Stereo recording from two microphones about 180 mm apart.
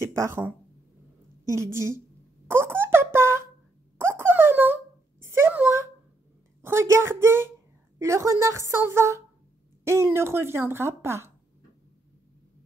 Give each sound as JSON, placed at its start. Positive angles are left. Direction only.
{"t": 0.0, "sound": "speech", "side_deg": -15}
{"t": 1.5, "sound": "a woman's voice", "side_deg": -15}
{"t": 2.4, "sound": "a sound", "side_deg": -15}
{"t": 6.6, "sound": "a woman's voice", "side_deg": -15}